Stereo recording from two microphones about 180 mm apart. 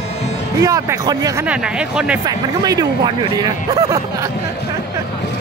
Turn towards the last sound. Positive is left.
turn(degrees=-20)  # may be behind; listen again after turning